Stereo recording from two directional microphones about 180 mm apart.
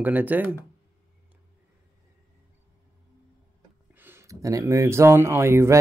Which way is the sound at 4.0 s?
15° right (ahead or behind).